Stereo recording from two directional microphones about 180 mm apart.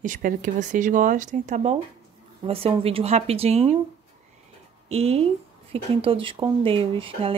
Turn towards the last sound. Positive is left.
turn(degrees=-30)  # may be behind; listen again after turning